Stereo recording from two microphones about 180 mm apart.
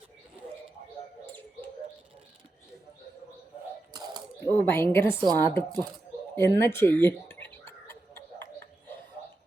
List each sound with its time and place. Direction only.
3.9 s a sound: 25° right (ahead or behind)
4.4 s a woman's voice: 15° left (ahead or behind)
5.1 s a woman's voice: 25° right (ahead or behind)
5.4 s a woman's voice: 10° left (ahead or behind)